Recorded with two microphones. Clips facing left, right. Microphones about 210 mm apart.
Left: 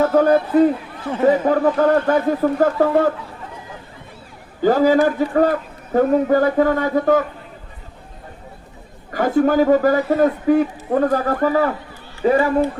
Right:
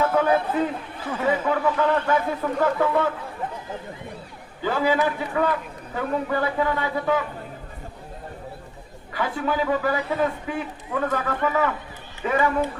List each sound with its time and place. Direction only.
0.0 s a man's voice: 40° left (ahead or behind)
4.6 s a man's voice: 40° left (ahead or behind)
9.1 s a man's voice: 45° left (ahead or behind)